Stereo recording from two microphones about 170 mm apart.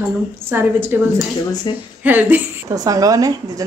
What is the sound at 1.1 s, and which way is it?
Speech, 20° left (ahead or behind).